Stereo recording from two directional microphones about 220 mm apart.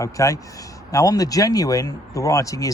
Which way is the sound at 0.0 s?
15° left (ahead or behind).